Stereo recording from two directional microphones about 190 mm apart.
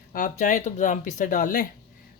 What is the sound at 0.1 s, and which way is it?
A man's voice, 40° left (ahead or behind).